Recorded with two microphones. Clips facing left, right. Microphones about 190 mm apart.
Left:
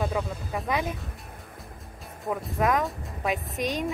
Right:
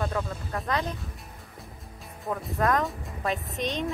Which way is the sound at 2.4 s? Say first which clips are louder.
Even; centre (ahead or behind).